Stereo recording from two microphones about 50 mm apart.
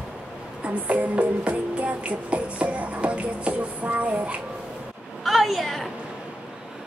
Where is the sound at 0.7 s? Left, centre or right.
Right.